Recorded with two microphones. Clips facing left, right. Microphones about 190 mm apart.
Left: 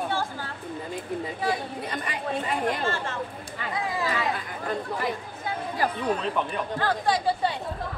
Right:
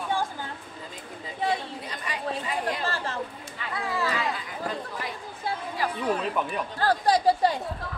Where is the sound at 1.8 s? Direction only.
55° left (ahead or behind).